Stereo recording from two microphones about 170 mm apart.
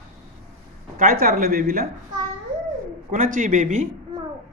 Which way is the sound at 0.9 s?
55° right (ahead or behind).